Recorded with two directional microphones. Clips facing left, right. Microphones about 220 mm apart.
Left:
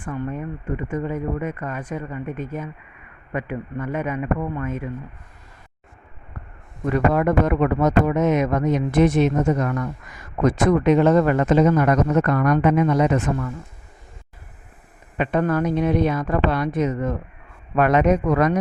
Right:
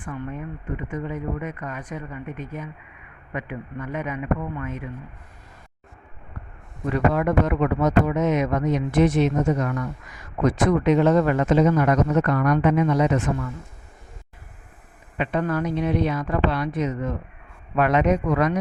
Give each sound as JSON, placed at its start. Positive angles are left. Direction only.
{"t": 0.0, "sound": "speech", "side_deg": 45}
{"t": 6.9, "sound": "speech", "side_deg": 50}
{"t": 15.2, "sound": "speech", "side_deg": 50}